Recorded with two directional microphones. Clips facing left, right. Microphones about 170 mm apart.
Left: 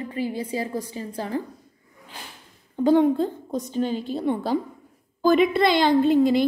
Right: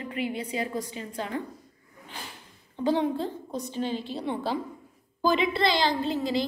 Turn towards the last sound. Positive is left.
turn(degrees=55)  # may be behind; listen again after turning